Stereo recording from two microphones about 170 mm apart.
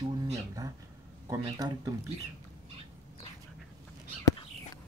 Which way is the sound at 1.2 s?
20° right (ahead or behind).